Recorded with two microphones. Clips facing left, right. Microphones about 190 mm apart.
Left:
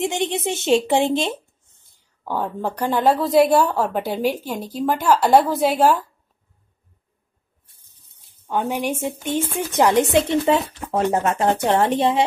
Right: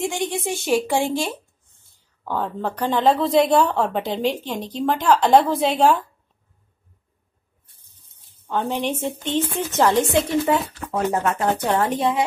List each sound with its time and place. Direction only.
0.0 s a woman's voice: 20° left (ahead or behind); by 5.9 s 5° left (ahead or behind)
8.5 s a woman's voice: 10° left (ahead or behind)